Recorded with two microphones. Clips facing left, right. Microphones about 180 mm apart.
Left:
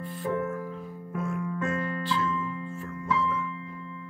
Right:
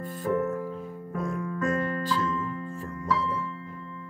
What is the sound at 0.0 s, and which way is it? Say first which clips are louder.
Music: right 3 dB; 45° right (ahead or behind).